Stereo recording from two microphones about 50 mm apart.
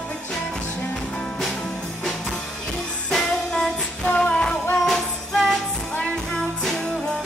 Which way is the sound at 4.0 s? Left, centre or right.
Left.